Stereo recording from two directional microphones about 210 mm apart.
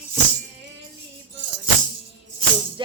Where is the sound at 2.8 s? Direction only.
20° right (ahead or behind).